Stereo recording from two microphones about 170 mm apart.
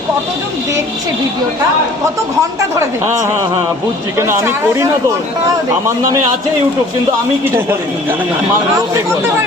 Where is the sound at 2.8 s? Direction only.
15° right (ahead or behind).